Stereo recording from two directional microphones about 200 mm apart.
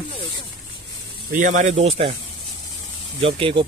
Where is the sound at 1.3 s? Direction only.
40° right (ahead or behind).